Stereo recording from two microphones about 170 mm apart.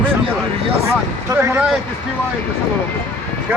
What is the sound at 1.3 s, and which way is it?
Speech, 15° right (ahead or behind).